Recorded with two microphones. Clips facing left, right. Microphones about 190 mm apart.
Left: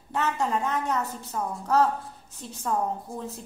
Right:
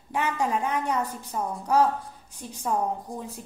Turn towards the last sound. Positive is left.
turn(degrees=-10)  # may be behind; listen again after turning